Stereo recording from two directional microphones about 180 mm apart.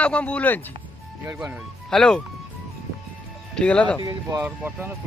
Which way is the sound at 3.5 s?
5° left (ahead or behind).